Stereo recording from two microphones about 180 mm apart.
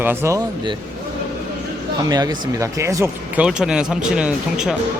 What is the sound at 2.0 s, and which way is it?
A man's voice, 20° right (ahead or behind).